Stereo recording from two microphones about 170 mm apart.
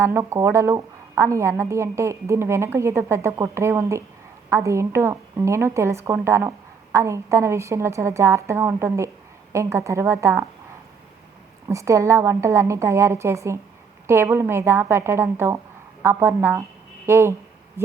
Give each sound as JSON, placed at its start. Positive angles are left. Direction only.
{"t": 0.0, "sound": "a woman's voice", "side_deg": -15}
{"t": 11.7, "sound": "a woman's voice", "side_deg": -20}